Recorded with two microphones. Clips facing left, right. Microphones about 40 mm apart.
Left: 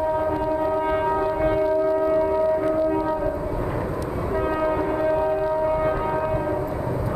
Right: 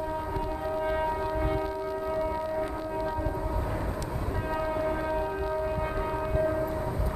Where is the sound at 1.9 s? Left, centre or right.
Left.